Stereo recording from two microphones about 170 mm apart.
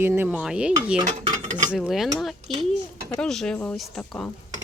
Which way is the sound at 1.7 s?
5° right (ahead or behind).